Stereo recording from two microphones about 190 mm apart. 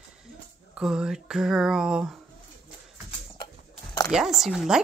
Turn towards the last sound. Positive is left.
turn(degrees=-5)  # may be behind; listen again after turning